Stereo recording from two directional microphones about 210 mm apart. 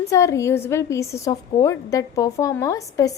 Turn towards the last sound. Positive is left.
turn(degrees=15)  # may be behind; listen again after turning